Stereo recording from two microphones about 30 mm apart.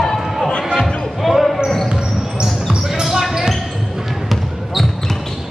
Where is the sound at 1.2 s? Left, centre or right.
Centre.